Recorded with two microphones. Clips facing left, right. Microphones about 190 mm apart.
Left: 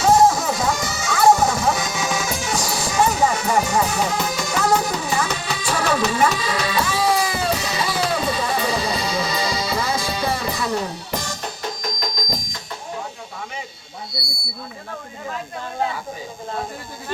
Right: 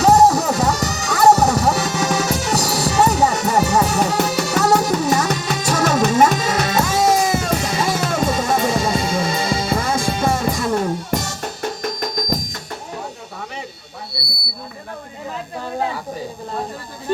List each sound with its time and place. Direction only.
0.0 s music: 40° right (ahead or behind)